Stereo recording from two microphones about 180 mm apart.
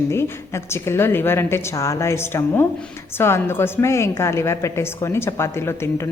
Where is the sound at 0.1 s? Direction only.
15° left (ahead or behind).